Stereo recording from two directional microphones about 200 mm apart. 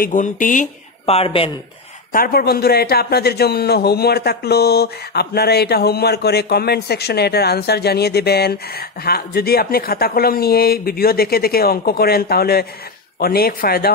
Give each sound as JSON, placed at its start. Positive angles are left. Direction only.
{"t": 0.0, "sound": "speech", "side_deg": 40}
{"t": 2.1, "sound": "a man's voice", "side_deg": 50}